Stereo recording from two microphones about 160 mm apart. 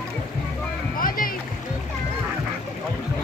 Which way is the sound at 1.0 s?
60° left (ahead or behind).